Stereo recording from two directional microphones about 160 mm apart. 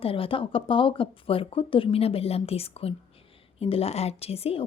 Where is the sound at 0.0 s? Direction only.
35° left (ahead or behind).